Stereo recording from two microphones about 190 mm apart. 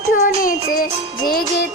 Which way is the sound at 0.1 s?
45° left (ahead or behind).